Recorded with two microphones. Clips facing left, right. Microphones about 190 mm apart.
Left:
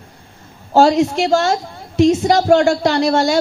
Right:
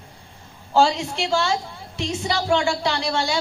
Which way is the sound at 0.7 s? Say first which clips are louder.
Left 7 dB; 45° left (ahead or behind).